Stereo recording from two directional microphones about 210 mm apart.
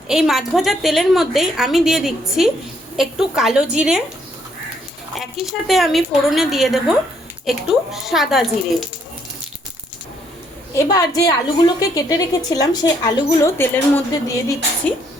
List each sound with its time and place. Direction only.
0.1 s a woman's voice: centre (ahead or behind)
5.1 s a woman's voice: centre (ahead or behind)
10.8 s a woman's voice: 15° left (ahead or behind)